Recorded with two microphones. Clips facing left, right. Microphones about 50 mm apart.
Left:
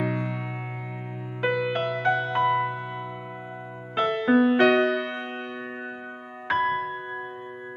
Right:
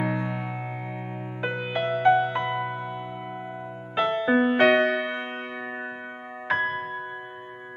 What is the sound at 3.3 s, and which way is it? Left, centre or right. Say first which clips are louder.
Music: right 2 dB; centre.